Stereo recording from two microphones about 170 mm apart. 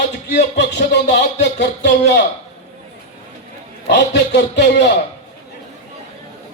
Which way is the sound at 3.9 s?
85° left.